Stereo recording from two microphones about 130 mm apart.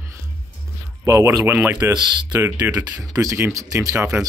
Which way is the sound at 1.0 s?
25° right (ahead or behind).